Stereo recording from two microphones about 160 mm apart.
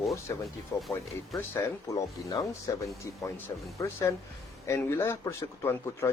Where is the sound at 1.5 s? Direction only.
20° left (ahead or behind).